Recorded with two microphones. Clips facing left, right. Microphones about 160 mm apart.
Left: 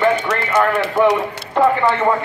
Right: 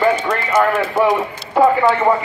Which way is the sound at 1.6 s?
5° right (ahead or behind).